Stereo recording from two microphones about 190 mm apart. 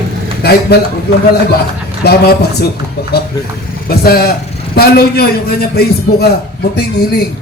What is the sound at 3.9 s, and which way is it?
A man's voice, 55° left (ahead or behind).